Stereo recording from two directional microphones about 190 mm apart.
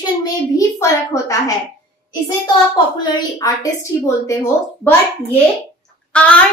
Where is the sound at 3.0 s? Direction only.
20° left (ahead or behind).